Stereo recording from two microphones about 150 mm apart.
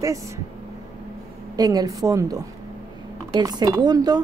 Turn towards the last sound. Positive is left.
turn(degrees=-25)  # may be behind; listen again after turning